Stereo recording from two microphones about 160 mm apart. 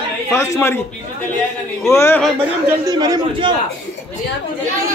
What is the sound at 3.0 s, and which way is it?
Speech, 25° right (ahead or behind).